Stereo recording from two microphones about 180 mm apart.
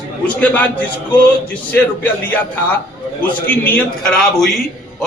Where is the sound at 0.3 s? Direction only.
10° left (ahead or behind).